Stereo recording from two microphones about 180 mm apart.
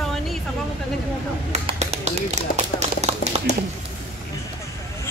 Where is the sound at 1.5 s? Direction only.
35° right (ahead or behind).